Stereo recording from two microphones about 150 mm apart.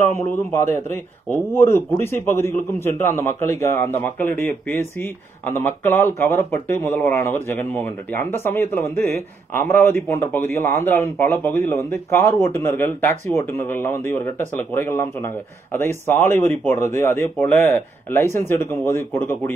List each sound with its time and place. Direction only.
0.1 s a man's voice: 15° left (ahead or behind)